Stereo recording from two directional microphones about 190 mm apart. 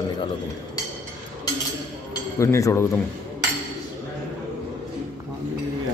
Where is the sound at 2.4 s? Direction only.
15° left (ahead or behind).